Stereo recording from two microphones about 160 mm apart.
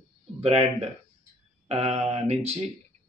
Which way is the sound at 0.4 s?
40° right (ahead or behind).